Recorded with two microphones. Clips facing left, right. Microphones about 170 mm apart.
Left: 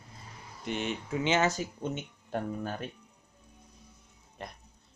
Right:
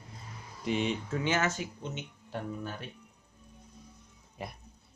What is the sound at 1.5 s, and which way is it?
Speech, 40° left (ahead or behind).